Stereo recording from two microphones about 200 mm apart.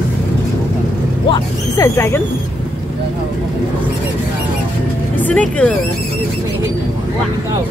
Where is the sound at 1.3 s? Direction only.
15° left (ahead or behind).